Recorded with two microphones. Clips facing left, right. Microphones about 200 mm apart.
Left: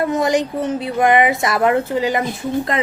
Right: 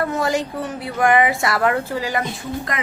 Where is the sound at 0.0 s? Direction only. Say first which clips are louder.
Left 4 dB; 20° left (ahead or behind).